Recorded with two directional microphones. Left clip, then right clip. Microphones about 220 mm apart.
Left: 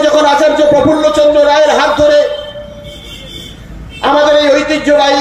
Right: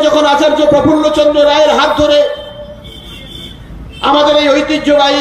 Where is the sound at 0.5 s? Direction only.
40° right (ahead or behind).